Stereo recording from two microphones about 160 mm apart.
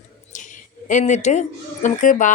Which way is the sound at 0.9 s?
50° left (ahead or behind).